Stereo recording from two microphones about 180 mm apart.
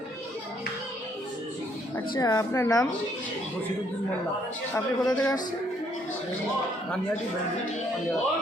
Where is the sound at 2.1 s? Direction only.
20° left (ahead or behind).